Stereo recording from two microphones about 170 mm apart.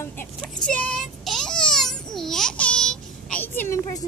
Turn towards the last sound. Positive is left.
turn(degrees=15)  # may be behind; listen again after turning